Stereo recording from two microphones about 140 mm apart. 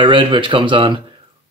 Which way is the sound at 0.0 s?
35° right (ahead or behind).